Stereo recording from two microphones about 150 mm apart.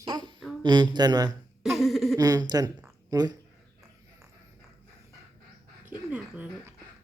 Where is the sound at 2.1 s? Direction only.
25° right (ahead or behind).